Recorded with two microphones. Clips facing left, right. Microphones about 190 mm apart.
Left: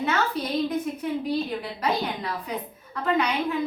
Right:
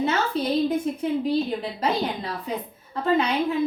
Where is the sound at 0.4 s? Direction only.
25° right (ahead or behind).